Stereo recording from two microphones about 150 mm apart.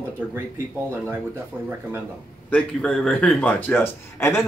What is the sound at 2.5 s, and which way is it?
Speech, 5° left (ahead or behind).